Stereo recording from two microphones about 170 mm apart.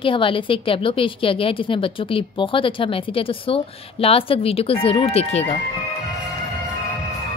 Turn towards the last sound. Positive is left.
turn(degrees=35)  # may be behind; listen again after turning